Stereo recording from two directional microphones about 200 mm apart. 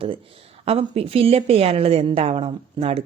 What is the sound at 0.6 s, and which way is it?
A woman's voice, 30° right (ahead or behind).